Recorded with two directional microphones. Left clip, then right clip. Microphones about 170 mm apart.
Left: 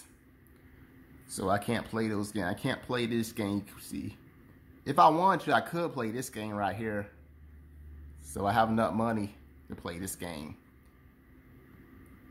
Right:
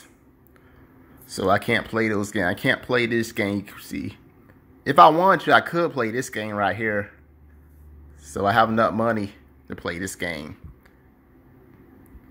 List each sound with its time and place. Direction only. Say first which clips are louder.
1.2 s speech: right 10 dB; 15° right (ahead or behind)
8.2 s speech: right 9 dB; 10° right (ahead or behind)